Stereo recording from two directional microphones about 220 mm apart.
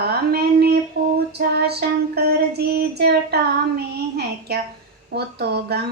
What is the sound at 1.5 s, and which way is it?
Child singing, 45° right (ahead or behind).